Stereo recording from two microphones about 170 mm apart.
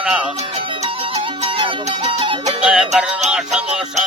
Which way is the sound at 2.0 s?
30° right (ahead or behind).